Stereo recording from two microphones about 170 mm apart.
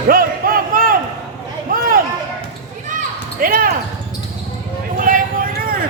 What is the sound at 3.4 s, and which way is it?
Basketball bounce, 55° right (ahead or behind).